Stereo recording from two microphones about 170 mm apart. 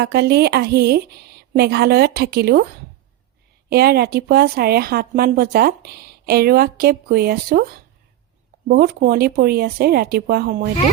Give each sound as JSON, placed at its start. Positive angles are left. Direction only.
{"t": 0.0, "sound": "speech", "side_deg": -75}
{"t": 3.7, "sound": "speech", "side_deg": -70}
{"t": 8.6, "sound": "speech", "side_deg": -60}